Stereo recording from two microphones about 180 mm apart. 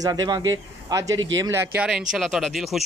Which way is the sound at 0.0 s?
20° right (ahead or behind).